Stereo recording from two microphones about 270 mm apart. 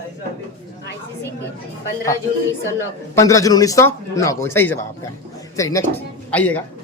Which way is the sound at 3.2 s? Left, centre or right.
Centre.